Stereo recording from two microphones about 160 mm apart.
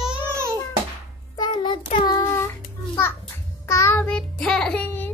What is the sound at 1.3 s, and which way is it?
Child singing, 30° left (ahead or behind).